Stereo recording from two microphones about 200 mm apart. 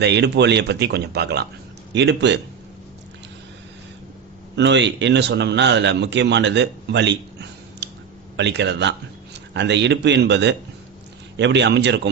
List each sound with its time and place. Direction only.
0.0 s a man's voice: 55° right (ahead or behind)
4.5 s a man's voice: 60° right (ahead or behind)